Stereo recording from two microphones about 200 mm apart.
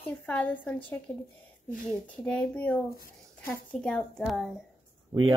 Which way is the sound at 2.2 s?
5° left (ahead or behind).